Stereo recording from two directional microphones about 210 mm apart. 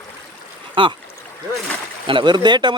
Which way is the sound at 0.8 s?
25° right (ahead or behind).